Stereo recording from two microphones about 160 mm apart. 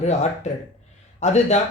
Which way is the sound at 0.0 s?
45° left (ahead or behind).